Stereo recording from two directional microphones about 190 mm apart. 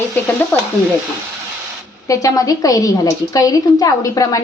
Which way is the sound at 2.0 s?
15° left (ahead or behind).